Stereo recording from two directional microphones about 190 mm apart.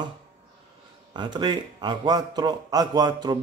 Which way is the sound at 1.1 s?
25° right (ahead or behind).